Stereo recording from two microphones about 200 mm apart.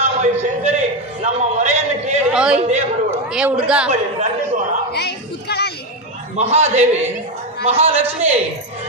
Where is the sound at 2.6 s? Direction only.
35° right (ahead or behind).